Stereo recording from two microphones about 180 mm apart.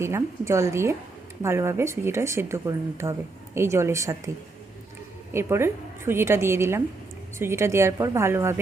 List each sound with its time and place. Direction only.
0.0 s speech: 15° right (ahead or behind)
5.3 s speech: 15° right (ahead or behind)